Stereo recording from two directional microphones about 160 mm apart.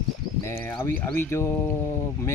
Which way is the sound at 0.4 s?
15° left (ahead or behind).